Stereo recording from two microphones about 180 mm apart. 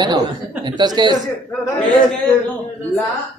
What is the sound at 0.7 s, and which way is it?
Speech, 25° right (ahead or behind).